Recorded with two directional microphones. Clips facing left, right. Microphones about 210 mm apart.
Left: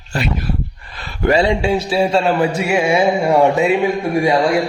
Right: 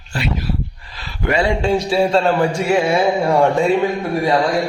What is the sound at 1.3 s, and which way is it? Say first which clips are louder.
Speech: left 3 dB; 25° left (ahead or behind).